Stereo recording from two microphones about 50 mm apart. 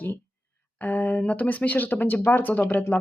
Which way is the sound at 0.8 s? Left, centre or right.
Left.